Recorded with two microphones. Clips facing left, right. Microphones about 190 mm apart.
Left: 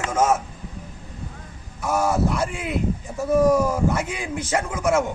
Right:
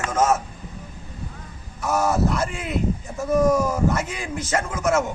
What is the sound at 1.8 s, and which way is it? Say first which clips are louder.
Speech: even; 10° left (ahead or behind).